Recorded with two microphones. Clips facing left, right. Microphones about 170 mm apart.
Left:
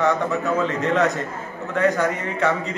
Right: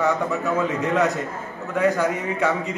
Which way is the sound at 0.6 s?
10° right (ahead or behind).